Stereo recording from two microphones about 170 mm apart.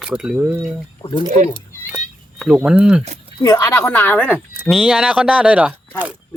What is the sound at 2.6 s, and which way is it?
Speech, 5° right (ahead or behind).